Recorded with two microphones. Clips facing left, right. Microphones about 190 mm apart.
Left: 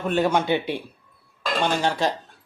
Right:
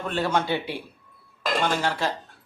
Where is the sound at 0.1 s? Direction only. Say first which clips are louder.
Left 4 dB; 15° left (ahead or behind).